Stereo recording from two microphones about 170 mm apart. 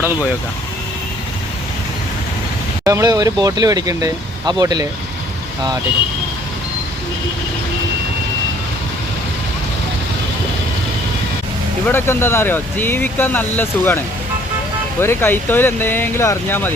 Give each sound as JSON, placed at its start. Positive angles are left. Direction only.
{"t": 2.8, "sound": "speech", "side_deg": -20}
{"t": 11.9, "sound": "speech", "side_deg": 15}
{"t": 15.0, "sound": "speech", "side_deg": 15}